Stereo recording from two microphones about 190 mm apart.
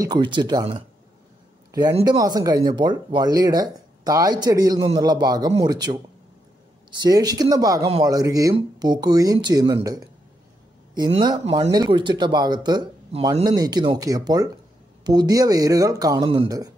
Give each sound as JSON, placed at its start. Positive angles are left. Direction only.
{"t": 0.0, "sound": "speech", "side_deg": -25}
{"t": 7.0, "sound": "speech", "side_deg": -20}
{"t": 11.0, "sound": "speech", "side_deg": -25}